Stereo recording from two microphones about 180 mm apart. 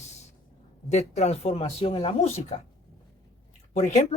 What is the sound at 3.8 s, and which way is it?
Speech, 40° left (ahead or behind).